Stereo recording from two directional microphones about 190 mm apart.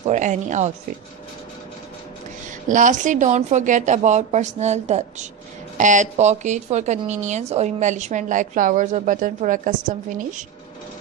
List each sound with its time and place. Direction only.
0.0 s speech: 40° right (ahead or behind)
2.7 s speech: 40° right (ahead or behind)